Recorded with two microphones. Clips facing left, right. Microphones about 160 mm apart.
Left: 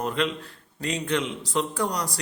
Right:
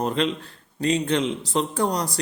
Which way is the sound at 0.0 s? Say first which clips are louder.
Right 3 dB; 30° right (ahead or behind).